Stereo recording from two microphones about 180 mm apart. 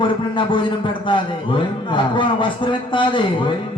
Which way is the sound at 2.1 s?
25° left (ahead or behind).